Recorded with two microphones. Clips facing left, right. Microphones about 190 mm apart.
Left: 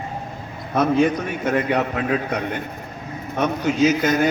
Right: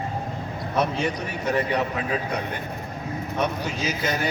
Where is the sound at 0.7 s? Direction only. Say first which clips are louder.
Left 7 dB; 55° left (ahead or behind).